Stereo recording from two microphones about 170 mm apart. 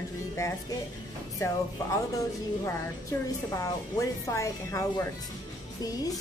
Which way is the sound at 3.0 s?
20° left (ahead or behind).